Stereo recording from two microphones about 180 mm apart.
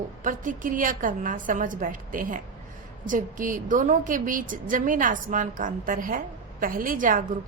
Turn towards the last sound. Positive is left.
turn(degrees=-50)  # may be behind; listen again after turning